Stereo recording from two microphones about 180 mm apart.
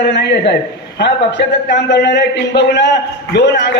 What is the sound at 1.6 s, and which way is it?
A man's voice, 70° left (ahead or behind).